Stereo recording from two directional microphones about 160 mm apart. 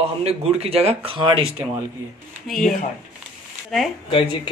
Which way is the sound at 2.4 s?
Centre (ahead or behind).